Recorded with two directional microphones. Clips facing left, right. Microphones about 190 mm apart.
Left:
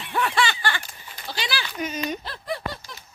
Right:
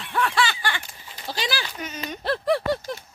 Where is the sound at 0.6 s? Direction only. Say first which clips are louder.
Left 1 dB; 15° right (ahead or behind).